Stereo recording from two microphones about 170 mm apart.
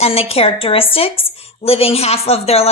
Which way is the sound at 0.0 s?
35° left (ahead or behind).